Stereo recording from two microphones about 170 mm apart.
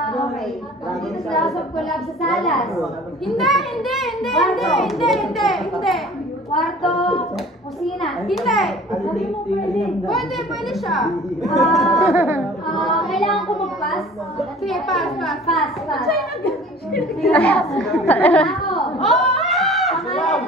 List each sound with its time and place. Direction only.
1.3 s a woman's voice: centre (ahead or behind)
12.0 s speech: 15° right (ahead or behind)
12.7 s a woman's voice: centre (ahead or behind)
14.7 s a woman's voice: centre (ahead or behind)